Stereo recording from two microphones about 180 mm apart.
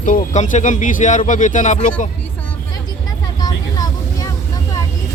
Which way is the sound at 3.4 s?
20° left (ahead or behind).